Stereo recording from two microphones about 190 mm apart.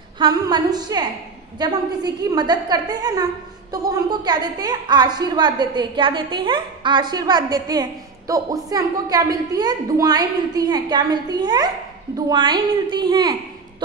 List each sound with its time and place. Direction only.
0.2 s a woman's voice: 20° right (ahead or behind)